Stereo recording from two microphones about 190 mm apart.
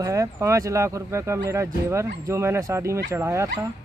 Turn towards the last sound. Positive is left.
turn(degrees=-15)  # may be behind; listen again after turning